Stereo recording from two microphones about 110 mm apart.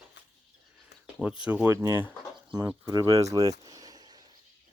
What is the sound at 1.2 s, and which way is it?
Speech, 10° right (ahead or behind).